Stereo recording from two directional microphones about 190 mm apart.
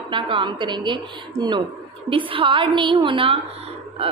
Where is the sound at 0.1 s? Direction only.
25° right (ahead or behind).